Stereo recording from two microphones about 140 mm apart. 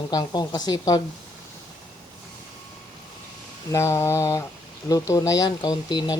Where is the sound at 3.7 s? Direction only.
20° left (ahead or behind).